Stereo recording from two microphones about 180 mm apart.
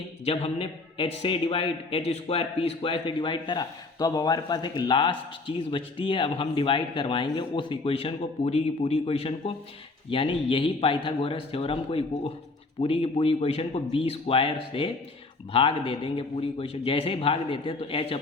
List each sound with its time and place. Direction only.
0.3 s a man's voice: 30° left (ahead or behind)